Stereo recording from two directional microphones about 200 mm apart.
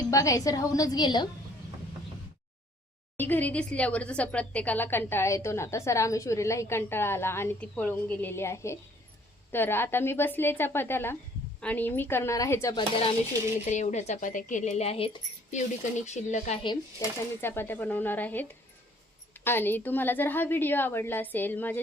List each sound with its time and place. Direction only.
0.1 s a woman's voice: 15° left (ahead or behind)
3.2 s a woman's voice: 10° left (ahead or behind)
13.7 s speech: 35° left (ahead or behind)
16.6 s a woman's voice: 15° left (ahead or behind)